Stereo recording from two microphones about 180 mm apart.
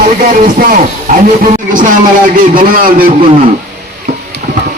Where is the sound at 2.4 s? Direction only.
50° right (ahead or behind).